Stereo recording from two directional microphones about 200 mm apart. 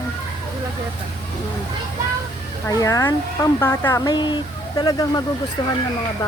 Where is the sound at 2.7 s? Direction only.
15° left (ahead or behind).